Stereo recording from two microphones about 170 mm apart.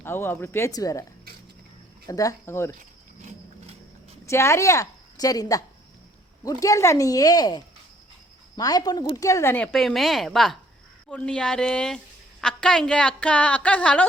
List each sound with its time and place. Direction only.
0.0 s a woman's voice: 15° left (ahead or behind)
2.0 s a woman's voice: 20° left (ahead or behind)
2.7 s insect: 40° right (ahead or behind)
4.3 s a woman's voice: 15° left (ahead or behind)
9.7 s a woman's voice: centre (ahead or behind)